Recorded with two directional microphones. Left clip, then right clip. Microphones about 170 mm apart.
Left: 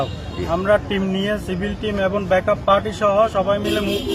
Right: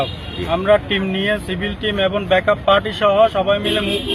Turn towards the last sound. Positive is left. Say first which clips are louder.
# right 2 dB
turn(degrees=0)  # may be behind; listen again after turning